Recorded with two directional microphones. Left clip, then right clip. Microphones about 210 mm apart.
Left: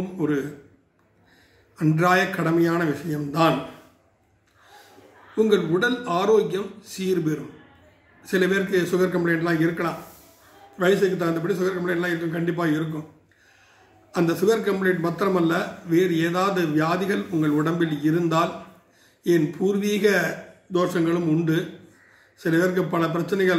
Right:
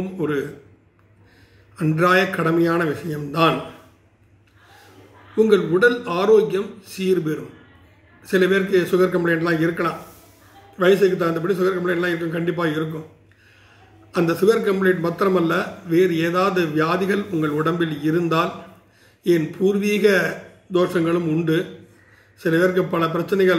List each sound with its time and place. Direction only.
0.2 s a man's voice: centre (ahead or behind)
1.8 s a man's voice: centre (ahead or behind)
5.3 s a man's voice: centre (ahead or behind)
14.1 s a man's voice: centre (ahead or behind)